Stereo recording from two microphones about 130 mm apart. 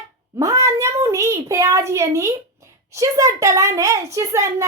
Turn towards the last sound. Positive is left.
turn(degrees=-25)  # may be behind; listen again after turning